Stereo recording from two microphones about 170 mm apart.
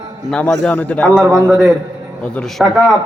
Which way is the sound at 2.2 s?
5° left (ahead or behind).